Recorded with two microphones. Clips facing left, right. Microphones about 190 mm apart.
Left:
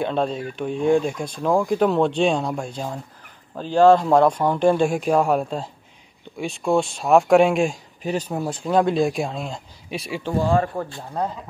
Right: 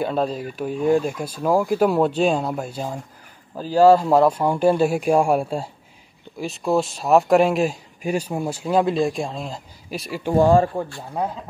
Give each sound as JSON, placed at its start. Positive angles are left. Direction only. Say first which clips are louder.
{"t": 0.0, "sound": "speech", "louder": "even", "side_deg": -5}
{"t": 10.8, "sound": "speech", "louder": "right 2 dB", "side_deg": -15}